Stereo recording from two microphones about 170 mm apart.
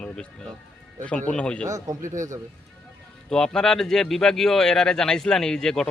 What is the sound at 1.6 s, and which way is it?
Speech, 20° right (ahead or behind).